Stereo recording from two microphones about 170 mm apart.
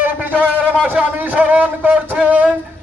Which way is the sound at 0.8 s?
10° right (ahead or behind).